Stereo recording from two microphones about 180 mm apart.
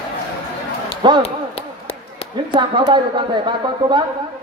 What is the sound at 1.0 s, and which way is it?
Speech, 25° right (ahead or behind).